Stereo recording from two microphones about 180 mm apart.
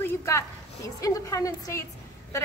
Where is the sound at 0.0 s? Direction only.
15° left (ahead or behind).